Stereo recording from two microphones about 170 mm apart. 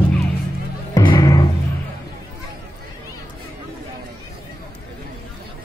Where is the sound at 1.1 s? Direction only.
20° left (ahead or behind).